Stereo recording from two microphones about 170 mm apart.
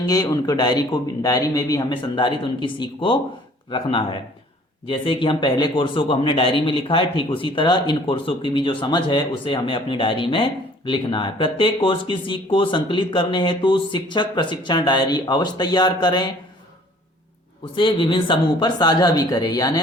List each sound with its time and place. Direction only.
0.1 s a man's voice: 20° left (ahead or behind)
17.7 s a man's voice: 30° left (ahead or behind)